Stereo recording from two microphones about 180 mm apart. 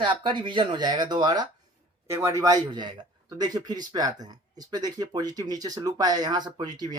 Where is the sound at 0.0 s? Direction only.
25° right (ahead or behind).